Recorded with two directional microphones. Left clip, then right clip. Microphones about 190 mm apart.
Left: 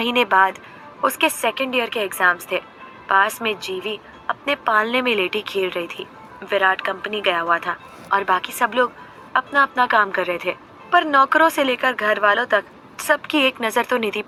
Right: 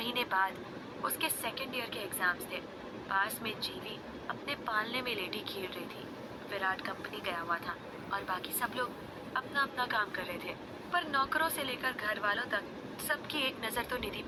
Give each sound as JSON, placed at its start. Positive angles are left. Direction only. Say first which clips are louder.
{"t": 0.0, "sound": "a woman's voice", "louder": "left 16 dB", "side_deg": 50}